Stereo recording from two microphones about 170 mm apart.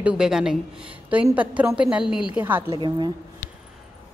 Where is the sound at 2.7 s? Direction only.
30° right (ahead or behind).